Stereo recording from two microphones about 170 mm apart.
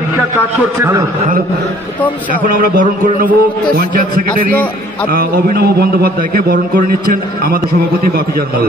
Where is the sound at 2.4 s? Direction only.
55° right (ahead or behind).